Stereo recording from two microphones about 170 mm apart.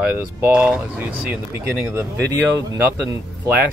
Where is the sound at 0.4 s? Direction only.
10° right (ahead or behind).